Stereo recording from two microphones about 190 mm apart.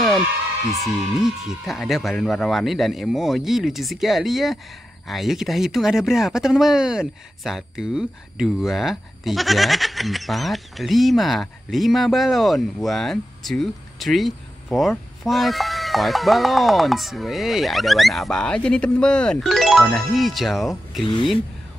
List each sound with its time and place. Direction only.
1.2 s speech: centre (ahead or behind)
21.0 s speech: 25° left (ahead or behind)